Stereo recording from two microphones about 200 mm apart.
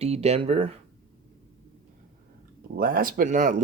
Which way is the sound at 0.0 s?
30° right (ahead or behind).